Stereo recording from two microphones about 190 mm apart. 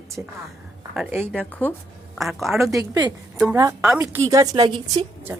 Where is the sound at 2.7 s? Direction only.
20° right (ahead or behind).